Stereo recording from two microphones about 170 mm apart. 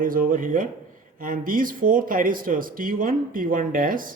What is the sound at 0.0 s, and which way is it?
Speech, 55° right (ahead or behind).